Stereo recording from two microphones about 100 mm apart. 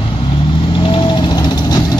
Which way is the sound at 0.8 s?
55° left (ahead or behind).